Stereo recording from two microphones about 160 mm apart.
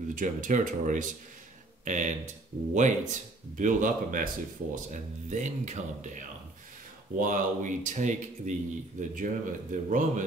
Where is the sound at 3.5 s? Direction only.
55° right (ahead or behind).